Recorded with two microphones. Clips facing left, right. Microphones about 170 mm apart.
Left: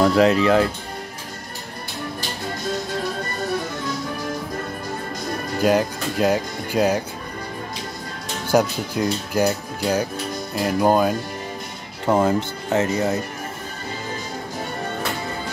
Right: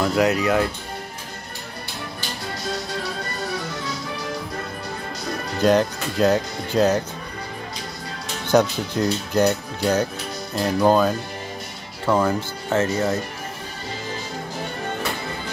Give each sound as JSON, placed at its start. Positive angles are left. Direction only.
{"t": 0.1, "sound": "speech", "side_deg": 30}
{"t": 5.6, "sound": "speech", "side_deg": 10}
{"t": 8.5, "sound": "speech", "side_deg": 5}